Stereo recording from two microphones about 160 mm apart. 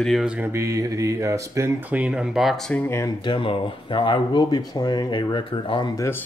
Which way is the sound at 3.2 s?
30° left (ahead or behind).